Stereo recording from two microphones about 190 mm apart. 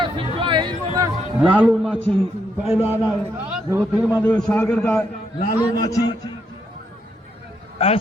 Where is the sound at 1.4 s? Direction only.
5° right (ahead or behind).